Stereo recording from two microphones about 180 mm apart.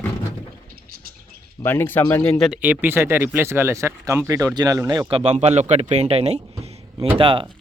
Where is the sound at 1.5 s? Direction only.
10° left (ahead or behind).